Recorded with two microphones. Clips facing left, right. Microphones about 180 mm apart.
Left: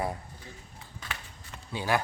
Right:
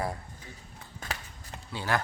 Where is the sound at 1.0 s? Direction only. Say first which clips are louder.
Right 3 dB; 40° right (ahead or behind).